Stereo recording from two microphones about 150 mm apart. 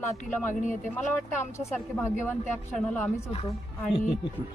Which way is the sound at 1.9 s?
15° left (ahead or behind).